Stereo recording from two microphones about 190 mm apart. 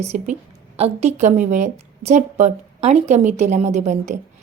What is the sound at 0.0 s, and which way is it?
A woman's voice, 35° right (ahead or behind).